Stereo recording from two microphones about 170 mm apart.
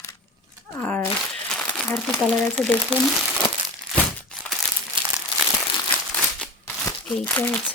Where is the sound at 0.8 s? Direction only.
10° left (ahead or behind).